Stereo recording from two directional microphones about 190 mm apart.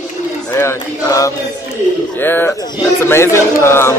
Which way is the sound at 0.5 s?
15° left (ahead or behind).